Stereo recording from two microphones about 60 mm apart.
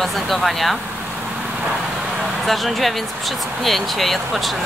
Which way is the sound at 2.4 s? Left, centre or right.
Centre.